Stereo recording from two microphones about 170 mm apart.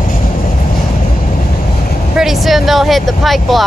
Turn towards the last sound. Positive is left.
turn(degrees=0)  # may be behind; listen again after turning